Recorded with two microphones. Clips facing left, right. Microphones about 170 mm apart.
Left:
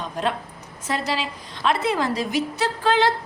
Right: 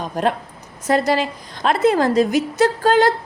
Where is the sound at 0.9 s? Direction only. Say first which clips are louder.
Right 8 dB; 45° right (ahead or behind).